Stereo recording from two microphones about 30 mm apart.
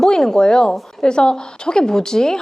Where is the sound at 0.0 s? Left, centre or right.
Centre.